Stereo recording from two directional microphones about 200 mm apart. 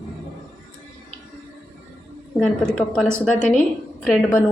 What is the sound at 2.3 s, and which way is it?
A woman's voice, centre (ahead or behind).